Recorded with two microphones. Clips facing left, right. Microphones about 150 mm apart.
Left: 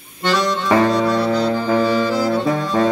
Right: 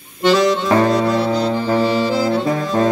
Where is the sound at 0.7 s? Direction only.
Centre (ahead or behind).